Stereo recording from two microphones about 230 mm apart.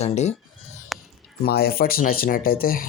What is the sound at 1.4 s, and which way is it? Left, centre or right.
Speech, left.